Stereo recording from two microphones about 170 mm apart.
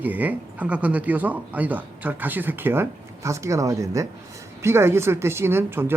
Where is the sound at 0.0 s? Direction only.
10° right (ahead or behind).